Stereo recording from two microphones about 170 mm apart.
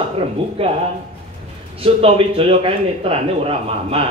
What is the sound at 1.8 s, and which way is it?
Speech, 35° right (ahead or behind).